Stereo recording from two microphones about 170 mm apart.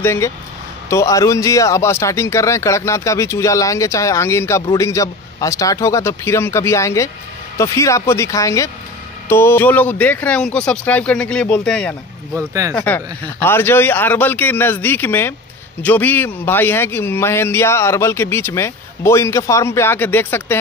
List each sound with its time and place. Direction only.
0.0 s speech: 15° left (ahead or behind)
12.4 s speech: 20° right (ahead or behind)
12.7 s speech: 10° left (ahead or behind)